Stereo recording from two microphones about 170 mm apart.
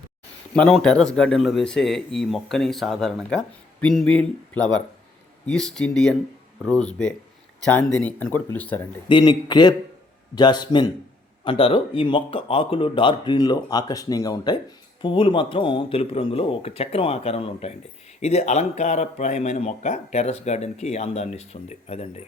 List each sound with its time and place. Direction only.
0.5 s speech: 5° left (ahead or behind)
9.0 s a man's voice: 25° left (ahead or behind)